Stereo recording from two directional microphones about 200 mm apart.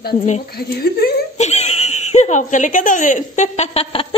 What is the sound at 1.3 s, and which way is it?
Speech, 35° left (ahead or behind).